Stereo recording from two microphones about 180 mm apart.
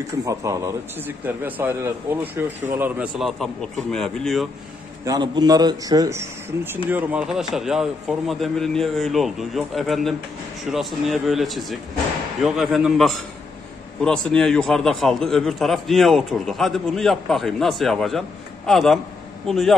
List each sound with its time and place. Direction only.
0.2 s a man's voice: 20° right (ahead or behind); by 4.5 s centre (ahead or behind)
5.0 s a man's voice: 20° right (ahead or behind); by 19.7 s centre (ahead or behind)